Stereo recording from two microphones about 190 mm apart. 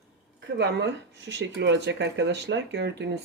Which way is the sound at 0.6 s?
70° right (ahead or behind).